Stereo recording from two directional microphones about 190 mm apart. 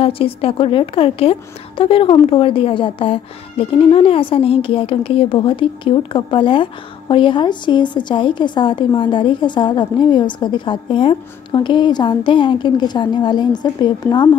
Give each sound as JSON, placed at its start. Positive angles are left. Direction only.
{"t": 0.0, "sound": "a woman's voice", "side_deg": 30}